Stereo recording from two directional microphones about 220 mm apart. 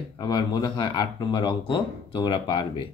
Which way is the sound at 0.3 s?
20° left (ahead or behind).